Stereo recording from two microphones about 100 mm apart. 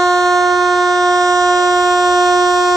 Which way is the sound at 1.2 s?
35° right (ahead or behind).